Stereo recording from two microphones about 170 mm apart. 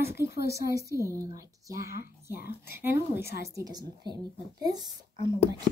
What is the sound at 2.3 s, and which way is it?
Speech, 65° left (ahead or behind).